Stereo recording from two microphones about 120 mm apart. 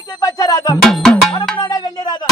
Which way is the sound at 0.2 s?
25° left (ahead or behind).